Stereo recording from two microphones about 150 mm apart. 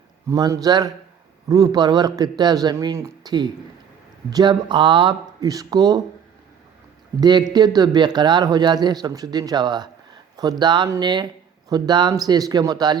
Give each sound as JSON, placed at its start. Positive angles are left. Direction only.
{"t": 0.3, "sound": "speech", "side_deg": -25}
{"t": 7.2, "sound": "speech", "side_deg": -30}